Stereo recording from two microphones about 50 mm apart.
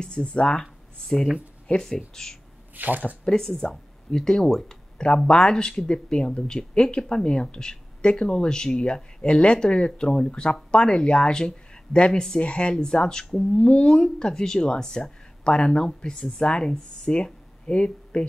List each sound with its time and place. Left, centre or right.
0.0 s speech: centre
1.0 s speech: centre
2.7 s speech: right
3.3 s speech: centre
13.4 s speech: left